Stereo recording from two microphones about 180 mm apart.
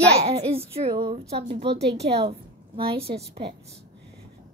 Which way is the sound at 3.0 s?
65° right (ahead or behind).